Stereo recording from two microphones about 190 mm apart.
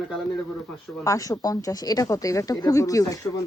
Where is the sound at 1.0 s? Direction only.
15° left (ahead or behind).